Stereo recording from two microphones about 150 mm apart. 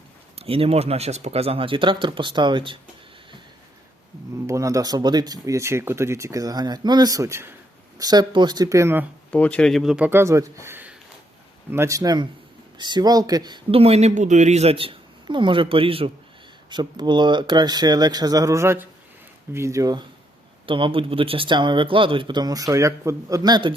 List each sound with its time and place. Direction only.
0.3 s speech: 40° right (ahead or behind)
4.4 s speech: 20° right (ahead or behind)
9.3 s speech: 10° left (ahead or behind)
10.1 s speech: 15° right (ahead or behind)